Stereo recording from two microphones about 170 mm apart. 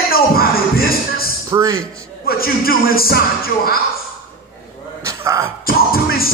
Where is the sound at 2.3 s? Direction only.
60° left (ahead or behind).